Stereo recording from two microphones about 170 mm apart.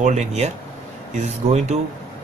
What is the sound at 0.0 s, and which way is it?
Speech, 45° right (ahead or behind).